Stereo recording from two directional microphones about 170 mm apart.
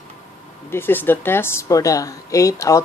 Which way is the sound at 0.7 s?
10° left (ahead or behind).